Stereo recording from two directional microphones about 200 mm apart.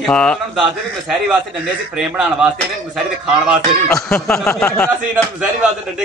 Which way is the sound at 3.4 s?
Centre (ahead or behind).